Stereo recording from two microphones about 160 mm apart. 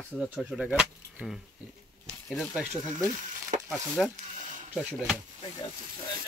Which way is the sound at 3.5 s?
45° right (ahead or behind).